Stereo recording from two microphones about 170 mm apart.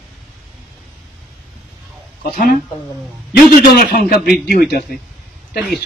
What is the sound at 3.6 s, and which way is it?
Speech, 55° left (ahead or behind).